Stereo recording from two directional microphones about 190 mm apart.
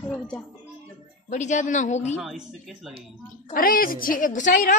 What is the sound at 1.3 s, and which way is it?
Speech, 40° left (ahead or behind).